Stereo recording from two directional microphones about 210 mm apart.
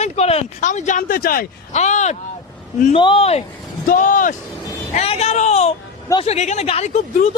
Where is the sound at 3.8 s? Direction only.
40° left (ahead or behind).